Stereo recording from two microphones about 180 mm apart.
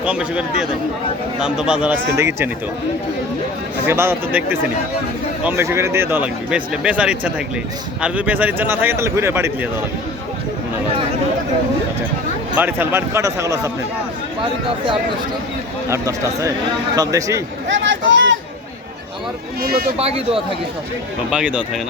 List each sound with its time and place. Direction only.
0.0 s a man's voice: 5° right (ahead or behind)
3.8 s speech: 15° right (ahead or behind)
12.5 s speech: 10° right (ahead or behind)
15.9 s speech: 15° right (ahead or behind)
17.7 s speech: 90° right
20.0 s speech: 35° right (ahead or behind)
21.2 s a man's voice: 5° right (ahead or behind)